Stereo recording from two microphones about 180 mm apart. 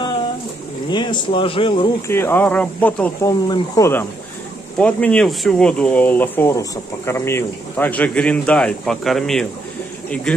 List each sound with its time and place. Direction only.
0.8 s speech: 25° left (ahead or behind)
2.0 s speech: 15° left (ahead or behind)
4.7 s speech: 5° left (ahead or behind)